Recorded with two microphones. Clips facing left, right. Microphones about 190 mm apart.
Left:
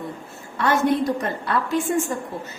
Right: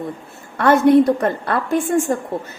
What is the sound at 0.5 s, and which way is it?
A woman's voice, 55° right (ahead or behind).